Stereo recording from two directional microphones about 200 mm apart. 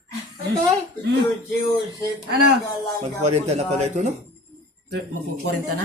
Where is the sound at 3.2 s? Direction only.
35° right (ahead or behind).